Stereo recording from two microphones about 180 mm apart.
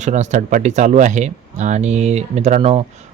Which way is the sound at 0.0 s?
40° right (ahead or behind).